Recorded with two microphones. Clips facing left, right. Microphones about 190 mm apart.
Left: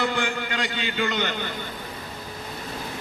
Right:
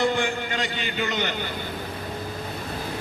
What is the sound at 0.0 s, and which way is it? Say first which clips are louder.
A man's voice: right 2 dB; 20° right (ahead or behind).